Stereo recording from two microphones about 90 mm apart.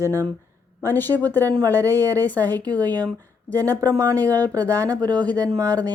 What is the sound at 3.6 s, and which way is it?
Speech, 40° right (ahead or behind).